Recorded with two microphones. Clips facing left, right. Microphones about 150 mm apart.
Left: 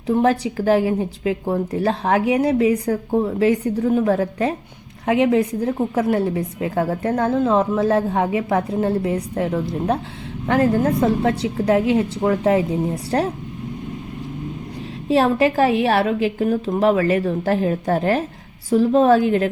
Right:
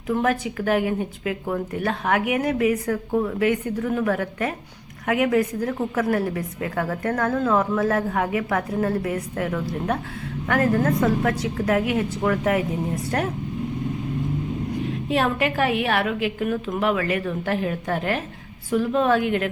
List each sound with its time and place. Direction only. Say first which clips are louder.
0.1 s a woman's voice: left 5 dB; 30° left (ahead or behind)
15.1 s speech: left 7 dB; 35° left (ahead or behind)